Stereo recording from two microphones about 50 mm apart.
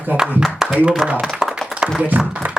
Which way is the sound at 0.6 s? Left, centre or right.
Centre.